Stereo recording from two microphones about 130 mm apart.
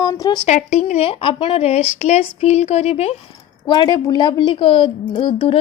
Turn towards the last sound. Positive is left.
turn(degrees=40)  # may be behind; listen again after turning